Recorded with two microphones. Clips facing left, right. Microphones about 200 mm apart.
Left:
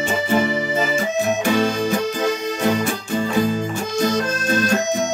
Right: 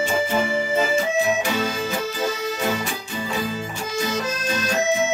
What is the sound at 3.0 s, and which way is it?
Music, 50° left (ahead or behind).